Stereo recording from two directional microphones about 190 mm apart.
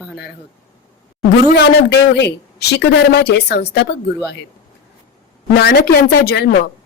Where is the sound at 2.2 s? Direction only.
60° left (ahead or behind).